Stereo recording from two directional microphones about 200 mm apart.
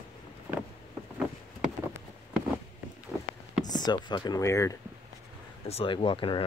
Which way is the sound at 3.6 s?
20° left (ahead or behind).